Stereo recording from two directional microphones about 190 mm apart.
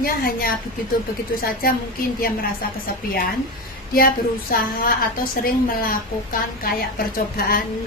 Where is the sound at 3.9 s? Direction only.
50° left (ahead or behind).